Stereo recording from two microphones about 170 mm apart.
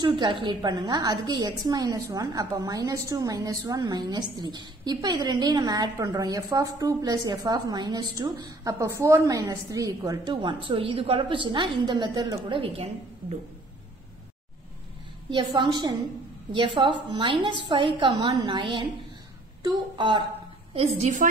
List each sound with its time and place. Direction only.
0.0 s a woman's voice: 30° right (ahead or behind)
15.5 s a woman's voice: 25° right (ahead or behind)